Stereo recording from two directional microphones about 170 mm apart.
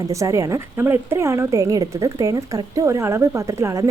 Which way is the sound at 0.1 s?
20° right (ahead or behind).